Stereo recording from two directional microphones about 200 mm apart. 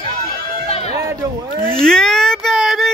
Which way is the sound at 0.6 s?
30° left (ahead or behind).